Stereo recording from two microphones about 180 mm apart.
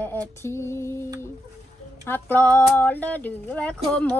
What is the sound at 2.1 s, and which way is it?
Female singing, 10° left (ahead or behind).